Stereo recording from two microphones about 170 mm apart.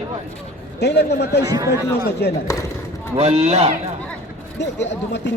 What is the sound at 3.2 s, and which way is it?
Speech, 40° right (ahead or behind).